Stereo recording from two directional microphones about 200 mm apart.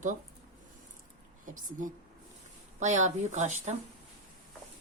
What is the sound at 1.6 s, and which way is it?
Speech, 40° right (ahead or behind).